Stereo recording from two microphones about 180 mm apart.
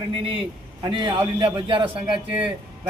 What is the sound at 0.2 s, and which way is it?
A man's voice, 30° right (ahead or behind).